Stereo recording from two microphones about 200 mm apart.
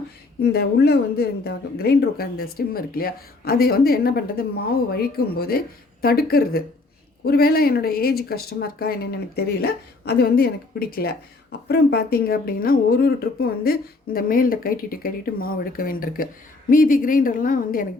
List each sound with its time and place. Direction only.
0.4 s speech: 55° left (ahead or behind)